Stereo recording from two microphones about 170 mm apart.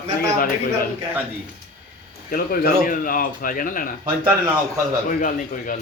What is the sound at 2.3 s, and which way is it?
Speech, 60° left (ahead or behind).